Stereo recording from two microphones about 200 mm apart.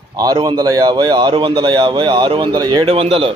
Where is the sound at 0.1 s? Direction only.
20° right (ahead or behind).